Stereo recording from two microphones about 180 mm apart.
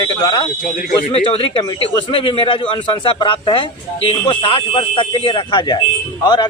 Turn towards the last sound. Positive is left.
turn(degrees=25)  # may be behind; listen again after turning